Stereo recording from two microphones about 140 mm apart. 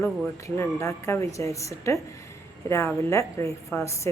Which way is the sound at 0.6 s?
20° left (ahead or behind).